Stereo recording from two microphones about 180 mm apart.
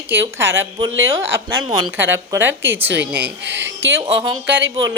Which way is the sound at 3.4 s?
85° right.